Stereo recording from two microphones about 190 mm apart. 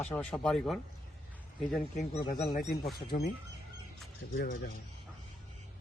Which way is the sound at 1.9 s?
40° left (ahead or behind).